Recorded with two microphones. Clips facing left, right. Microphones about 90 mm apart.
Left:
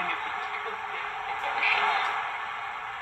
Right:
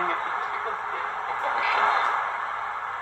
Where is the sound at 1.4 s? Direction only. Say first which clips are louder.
Right 4 dB; 25° right (ahead or behind).